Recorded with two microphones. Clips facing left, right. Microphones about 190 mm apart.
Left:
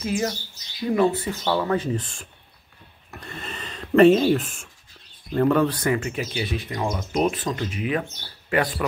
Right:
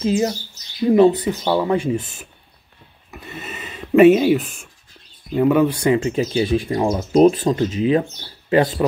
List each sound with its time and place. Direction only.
0.0 s speech: 25° right (ahead or behind); by 2.2 s 10° right (ahead or behind)
3.1 s a sound: 5° right (ahead or behind)
5.3 s speech: 10° right (ahead or behind)
5.9 s speech: 25° right (ahead or behind)